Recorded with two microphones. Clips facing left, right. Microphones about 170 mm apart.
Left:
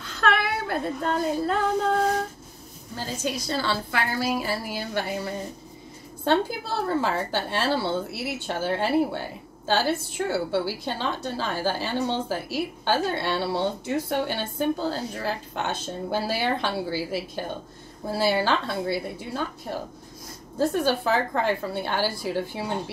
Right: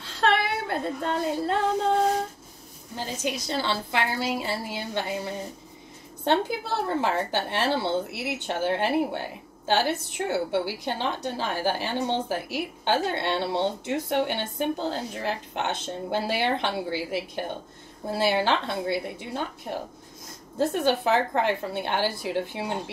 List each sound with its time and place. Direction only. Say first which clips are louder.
0.0 s speech: even; 30° right (ahead or behind)
3.0 s a woman's voice: left 1 dB; 20° right (ahead or behind)